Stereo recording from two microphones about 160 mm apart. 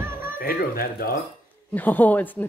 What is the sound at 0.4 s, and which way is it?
Speech, 65° left (ahead or behind).